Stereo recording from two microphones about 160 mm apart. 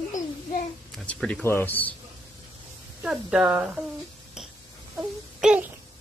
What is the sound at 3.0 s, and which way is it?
Speech, 5° right (ahead or behind).